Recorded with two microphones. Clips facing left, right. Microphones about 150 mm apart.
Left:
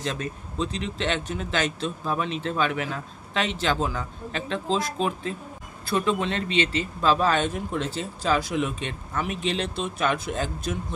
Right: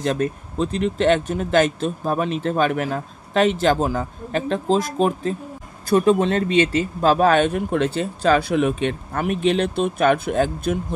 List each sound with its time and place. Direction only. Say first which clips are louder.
0.0 s speech: right 9 dB; 55° right (ahead or behind)